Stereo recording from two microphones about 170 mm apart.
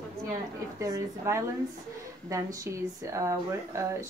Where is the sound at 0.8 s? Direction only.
20° right (ahead or behind).